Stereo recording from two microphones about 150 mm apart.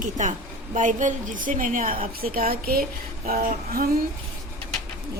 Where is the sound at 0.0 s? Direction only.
55° right (ahead or behind); by 2.8 s 80° right.